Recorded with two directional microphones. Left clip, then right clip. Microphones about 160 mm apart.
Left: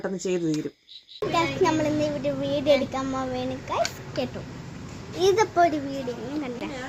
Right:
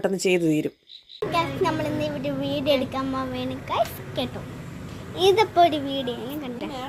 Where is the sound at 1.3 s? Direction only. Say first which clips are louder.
Left 1 dB; 20° left (ahead or behind).